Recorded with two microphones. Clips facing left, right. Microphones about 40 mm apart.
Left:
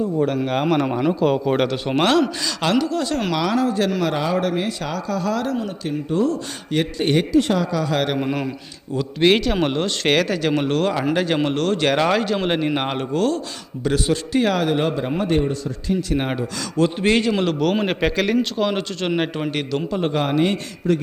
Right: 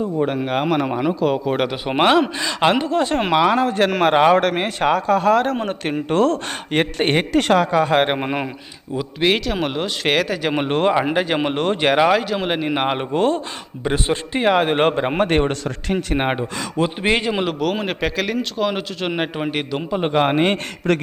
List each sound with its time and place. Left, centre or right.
0.2 s a man's voice: centre; by 6.4 s right
6.7 s speech: right
7.3 s speech: right
9.0 s a man's voice: centre
10.5 s speech: right
16.1 s a man's voice: right
20.9 s speech: right